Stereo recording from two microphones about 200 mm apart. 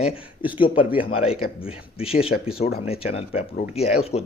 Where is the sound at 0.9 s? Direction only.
30° left (ahead or behind).